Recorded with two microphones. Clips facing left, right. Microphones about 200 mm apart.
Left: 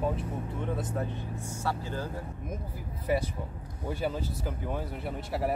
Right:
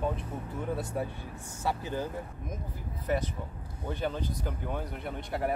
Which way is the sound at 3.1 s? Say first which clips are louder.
Left 2 dB; 10° left (ahead or behind).